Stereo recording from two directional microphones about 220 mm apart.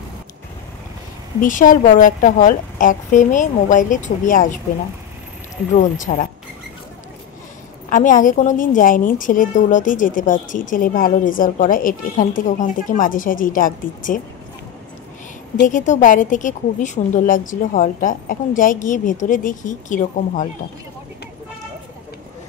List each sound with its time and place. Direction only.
1.4 s a woman's voice: 35° left (ahead or behind)
5.8 s a woman's voice: 35° left (ahead or behind)
7.9 s a woman's voice: 35° left (ahead or behind)
15.5 s a woman's voice: 35° left (ahead or behind)